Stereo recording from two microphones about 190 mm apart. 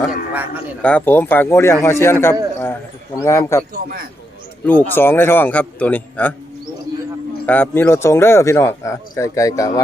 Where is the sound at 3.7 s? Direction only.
50° right (ahead or behind).